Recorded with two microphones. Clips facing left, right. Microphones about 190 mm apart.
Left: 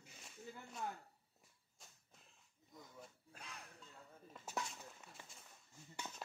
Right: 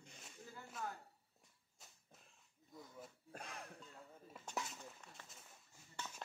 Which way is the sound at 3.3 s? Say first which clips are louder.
Right 5 dB; 50° right (ahead or behind).